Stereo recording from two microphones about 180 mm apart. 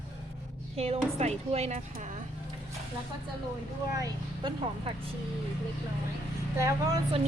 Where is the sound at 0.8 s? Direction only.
35° right (ahead or behind).